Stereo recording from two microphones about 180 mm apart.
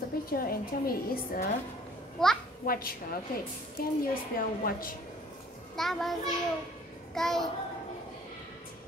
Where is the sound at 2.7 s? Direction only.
55° left (ahead or behind).